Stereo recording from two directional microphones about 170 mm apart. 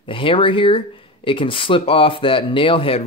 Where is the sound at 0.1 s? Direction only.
30° left (ahead or behind).